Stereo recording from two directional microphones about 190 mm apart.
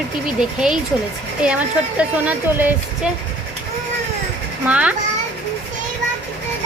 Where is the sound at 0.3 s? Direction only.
5° right (ahead or behind).